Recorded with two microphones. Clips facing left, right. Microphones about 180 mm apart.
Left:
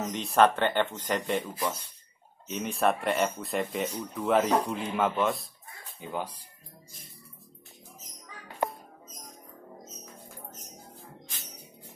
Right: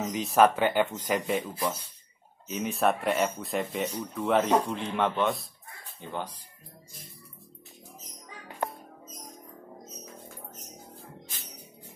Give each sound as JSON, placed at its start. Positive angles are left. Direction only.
{"t": 0.0, "sound": "speech", "side_deg": 0}
{"t": 8.6, "sound": "music", "side_deg": 10}